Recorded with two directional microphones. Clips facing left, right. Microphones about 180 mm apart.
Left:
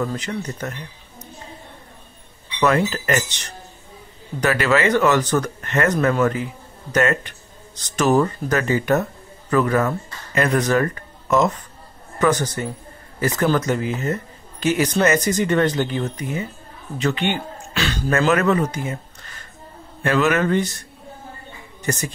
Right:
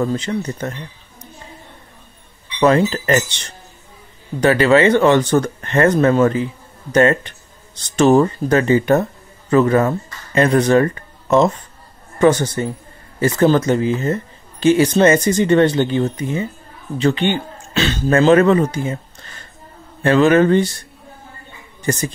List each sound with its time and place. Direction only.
0.0 s speech: 25° right (ahead or behind)
2.6 s speech: 25° right (ahead or behind)
20.0 s a man's voice: 30° right (ahead or behind)
21.9 s a man's voice: 30° right (ahead or behind)